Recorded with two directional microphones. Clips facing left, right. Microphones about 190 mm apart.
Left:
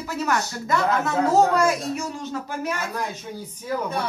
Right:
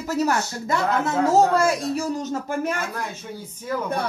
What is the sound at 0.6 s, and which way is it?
Speech, 25° right (ahead or behind).